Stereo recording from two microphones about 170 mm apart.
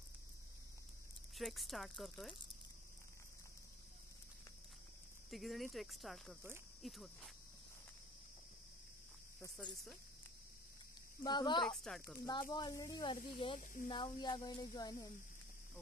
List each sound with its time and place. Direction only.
1.3 s speech: centre (ahead or behind)
5.3 s speech: centre (ahead or behind)
11.2 s speech: 25° left (ahead or behind)
11.6 s speech: centre (ahead or behind)
12.2 s speech: 25° left (ahead or behind)